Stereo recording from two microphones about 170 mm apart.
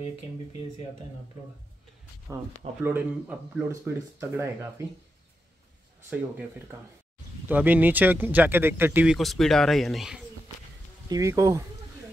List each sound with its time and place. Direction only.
2.8 s speech: 10° right (ahead or behind)
7.4 s speech: 10° right (ahead or behind)
11.1 s speech: 20° right (ahead or behind)